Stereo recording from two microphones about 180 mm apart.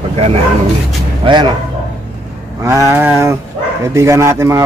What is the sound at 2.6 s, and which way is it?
Speech, 15° right (ahead or behind).